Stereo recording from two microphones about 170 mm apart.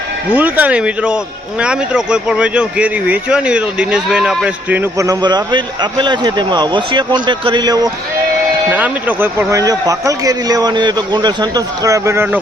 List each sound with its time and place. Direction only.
0.3 s speech: 10° right (ahead or behind)
8.7 s a man's voice: 10° right (ahead or behind)